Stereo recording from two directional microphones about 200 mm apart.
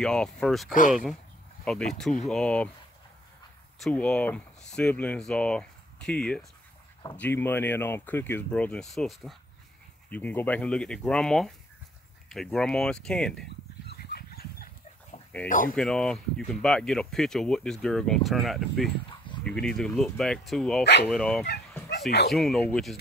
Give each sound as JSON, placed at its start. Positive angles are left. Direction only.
{"t": 0.0, "sound": "speech", "side_deg": 5}
{"t": 3.8, "sound": "speech", "side_deg": 5}
{"t": 13.8, "sound": "dog", "side_deg": 50}
{"t": 15.4, "sound": "speech", "side_deg": 45}
{"t": 15.7, "sound": "speech", "side_deg": 5}
{"t": 19.0, "sound": "dog", "side_deg": 25}
{"t": 19.4, "sound": "speech", "side_deg": 5}
{"t": 20.8, "sound": "speech", "side_deg": 55}
{"t": 21.1, "sound": "speech", "side_deg": 5}